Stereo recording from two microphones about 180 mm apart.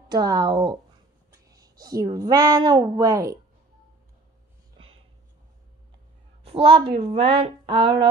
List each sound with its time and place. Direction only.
0.1 s a woman's voice: 20° right (ahead or behind)
6.4 s a woman's voice: 35° right (ahead or behind)